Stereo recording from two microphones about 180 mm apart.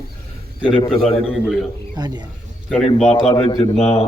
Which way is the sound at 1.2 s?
5° right (ahead or behind).